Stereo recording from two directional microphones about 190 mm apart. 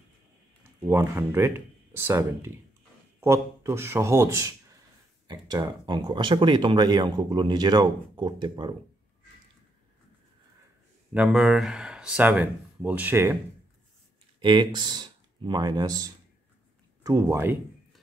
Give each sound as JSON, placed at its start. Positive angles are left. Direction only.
{"t": 0.7, "sound": "speech", "side_deg": -10}
{"t": 11.1, "sound": "speech", "side_deg": -5}
{"t": 14.4, "sound": "speech", "side_deg": -25}